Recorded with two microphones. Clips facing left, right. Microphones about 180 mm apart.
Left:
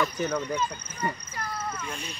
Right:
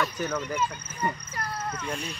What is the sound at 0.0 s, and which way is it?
Speech, 10° left (ahead or behind).